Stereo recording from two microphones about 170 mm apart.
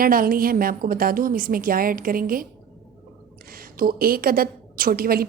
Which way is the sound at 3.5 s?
60° right (ahead or behind).